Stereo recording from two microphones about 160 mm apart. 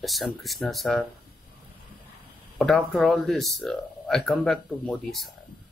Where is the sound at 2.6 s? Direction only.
Centre (ahead or behind).